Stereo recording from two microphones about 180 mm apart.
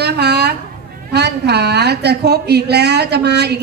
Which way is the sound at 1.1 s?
65° right (ahead or behind).